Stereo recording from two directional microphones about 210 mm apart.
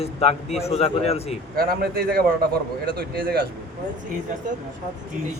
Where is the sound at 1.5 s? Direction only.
45° right (ahead or behind).